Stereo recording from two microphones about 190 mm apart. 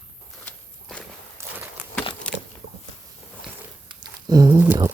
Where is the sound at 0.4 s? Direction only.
5° left (ahead or behind).